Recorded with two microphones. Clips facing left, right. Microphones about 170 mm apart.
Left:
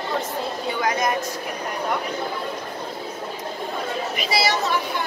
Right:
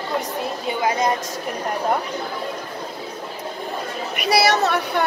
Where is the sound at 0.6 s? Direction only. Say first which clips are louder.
Right 3 dB; 25° right (ahead or behind).